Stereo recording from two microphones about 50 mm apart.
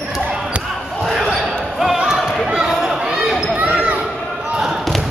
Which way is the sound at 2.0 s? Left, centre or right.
Centre.